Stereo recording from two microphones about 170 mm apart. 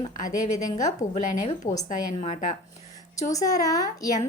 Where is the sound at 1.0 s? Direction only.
20° left (ahead or behind).